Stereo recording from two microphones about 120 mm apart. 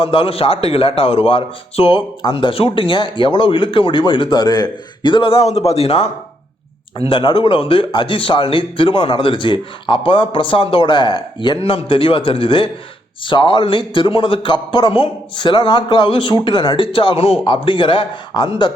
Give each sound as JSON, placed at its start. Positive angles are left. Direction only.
{"t": 0.0, "sound": "a man's voice", "side_deg": 50}
{"t": 7.0, "sound": "a man's voice", "side_deg": 45}